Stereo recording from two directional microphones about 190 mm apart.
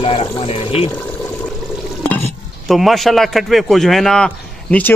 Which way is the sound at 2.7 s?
Centre (ahead or behind).